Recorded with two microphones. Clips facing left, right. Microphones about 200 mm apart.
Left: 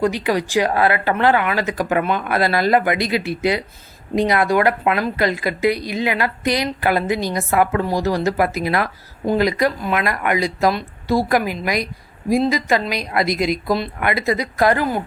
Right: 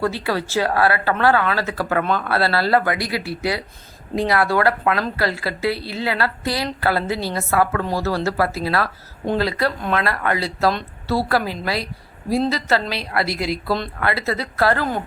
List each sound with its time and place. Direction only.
0.0 s speech: 15° left (ahead or behind)